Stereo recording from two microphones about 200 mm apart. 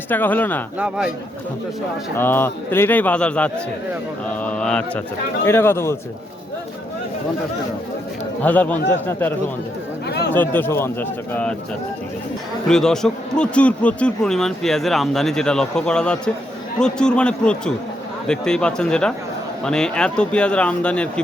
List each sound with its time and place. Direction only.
0.1 s speech: 10° left (ahead or behind)
0.8 s a man's voice: 5° right (ahead or behind)
2.1 s speech: 10° left (ahead or behind)
8.4 s speech: 10° left (ahead or behind)
10.1 s chatter: 55° left (ahead or behind)
10.3 s speech: 10° left (ahead or behind)
12.6 s a man's voice: 5° left (ahead or behind)